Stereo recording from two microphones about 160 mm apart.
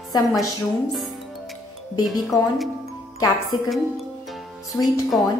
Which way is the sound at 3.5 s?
25° left (ahead or behind).